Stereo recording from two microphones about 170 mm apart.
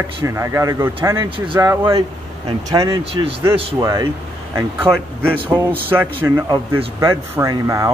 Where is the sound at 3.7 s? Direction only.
20° right (ahead or behind).